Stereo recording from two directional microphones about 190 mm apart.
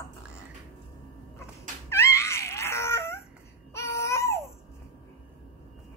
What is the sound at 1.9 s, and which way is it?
Whimper, 15° left (ahead or behind).